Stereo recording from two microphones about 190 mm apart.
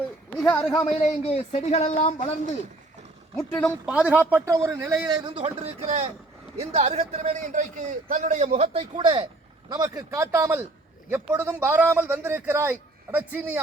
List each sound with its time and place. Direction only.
0.3 s speech: 5° left (ahead or behind)
0.6 s speech: 20° left (ahead or behind)
0.9 s speech: 30° left (ahead or behind)
3.7 s a man's voice: 5° right (ahead or behind)